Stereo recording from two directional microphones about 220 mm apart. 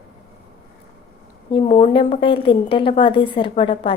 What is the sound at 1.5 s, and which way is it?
A woman's voice, 25° left (ahead or behind).